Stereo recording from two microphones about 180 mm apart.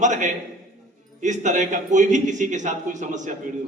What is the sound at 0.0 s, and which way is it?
A man's voice, 40° right (ahead or behind).